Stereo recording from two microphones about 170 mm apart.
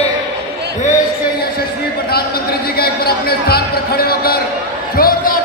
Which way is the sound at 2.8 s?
65° left (ahead or behind).